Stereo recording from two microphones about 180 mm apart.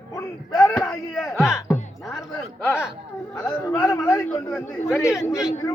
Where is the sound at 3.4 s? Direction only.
20° left (ahead or behind).